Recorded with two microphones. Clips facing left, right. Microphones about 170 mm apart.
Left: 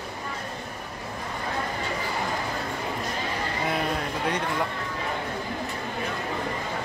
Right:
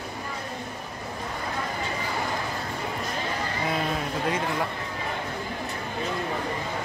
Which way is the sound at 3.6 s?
Centre (ahead or behind).